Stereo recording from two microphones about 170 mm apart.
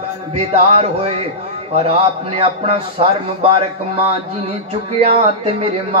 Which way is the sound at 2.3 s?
35° right (ahead or behind).